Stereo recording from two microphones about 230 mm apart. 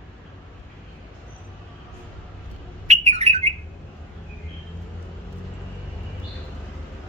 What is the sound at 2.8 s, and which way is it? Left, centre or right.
Bird, right.